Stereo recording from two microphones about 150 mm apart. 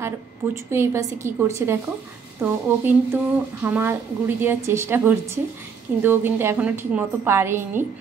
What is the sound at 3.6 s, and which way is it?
A woman's voice, 15° right (ahead or behind).